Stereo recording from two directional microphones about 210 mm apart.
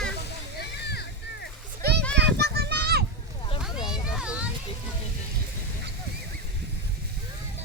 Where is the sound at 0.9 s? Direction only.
50° left (ahead or behind).